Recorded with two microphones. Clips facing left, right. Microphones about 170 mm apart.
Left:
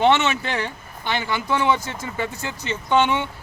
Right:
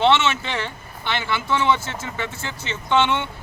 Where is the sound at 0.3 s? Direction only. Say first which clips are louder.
Even; 15° left (ahead or behind).